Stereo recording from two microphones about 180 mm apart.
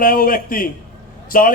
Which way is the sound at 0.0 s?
50° left (ahead or behind).